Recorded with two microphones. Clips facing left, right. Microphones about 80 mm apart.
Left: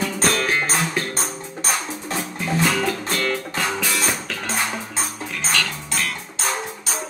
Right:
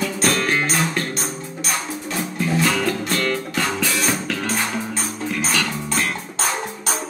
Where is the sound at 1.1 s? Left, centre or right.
Left.